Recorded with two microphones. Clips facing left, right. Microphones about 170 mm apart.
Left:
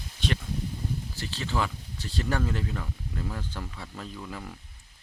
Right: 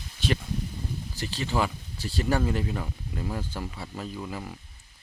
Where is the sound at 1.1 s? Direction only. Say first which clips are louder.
Right 5 dB; 15° right (ahead or behind).